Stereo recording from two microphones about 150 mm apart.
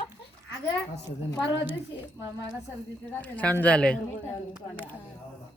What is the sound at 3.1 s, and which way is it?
Speech, 10° left (ahead or behind).